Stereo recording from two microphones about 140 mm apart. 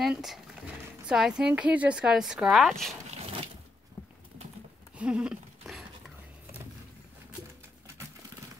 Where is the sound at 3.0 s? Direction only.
45° right (ahead or behind).